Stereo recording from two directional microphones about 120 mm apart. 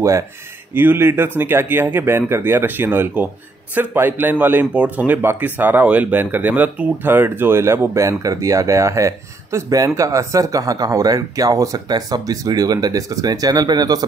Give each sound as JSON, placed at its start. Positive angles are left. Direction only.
{"t": 0.7, "sound": "speech", "side_deg": -20}